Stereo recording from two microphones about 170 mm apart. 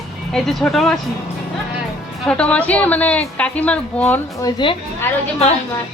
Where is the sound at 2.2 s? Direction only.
5° left (ahead or behind).